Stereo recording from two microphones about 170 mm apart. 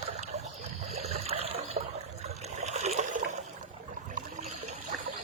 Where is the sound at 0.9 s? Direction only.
40° right (ahead or behind).